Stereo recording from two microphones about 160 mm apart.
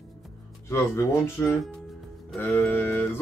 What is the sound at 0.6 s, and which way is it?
Speech, 15° left (ahead or behind).